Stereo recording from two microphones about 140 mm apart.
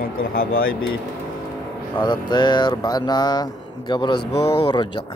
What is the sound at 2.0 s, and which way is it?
Speech, 30° left (ahead or behind).